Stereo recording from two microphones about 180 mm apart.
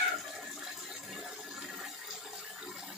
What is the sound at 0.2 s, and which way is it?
Toilet flush, centre (ahead or behind).